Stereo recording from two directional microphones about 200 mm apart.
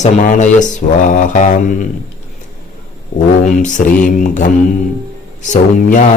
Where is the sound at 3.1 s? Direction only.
35° left (ahead or behind).